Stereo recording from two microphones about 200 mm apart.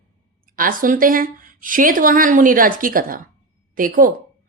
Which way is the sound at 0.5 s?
45° right (ahead or behind).